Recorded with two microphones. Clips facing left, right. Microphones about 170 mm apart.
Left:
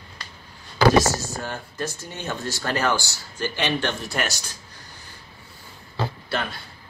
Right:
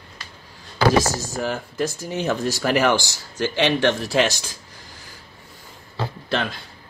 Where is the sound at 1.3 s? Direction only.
90° right.